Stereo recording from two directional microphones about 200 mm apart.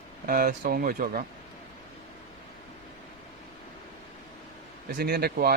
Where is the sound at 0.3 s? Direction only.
45° right (ahead or behind).